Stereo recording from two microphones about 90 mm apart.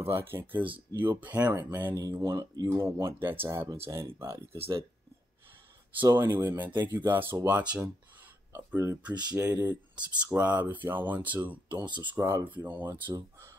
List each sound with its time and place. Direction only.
0.0 s speech: 25° right (ahead or behind)
2.1 s speech: 30° right (ahead or behind)
6.1 s speech: 25° right (ahead or behind)
8.5 s speech: 30° right (ahead or behind)
9.3 s speech: 15° right (ahead or behind)
11.7 s speech: 60° right (ahead or behind)
12.2 s speech: 35° right (ahead or behind)
12.4 s speech: 20° right (ahead or behind)